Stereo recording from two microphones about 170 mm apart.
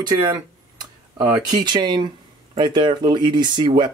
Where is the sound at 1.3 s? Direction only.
25° right (ahead or behind).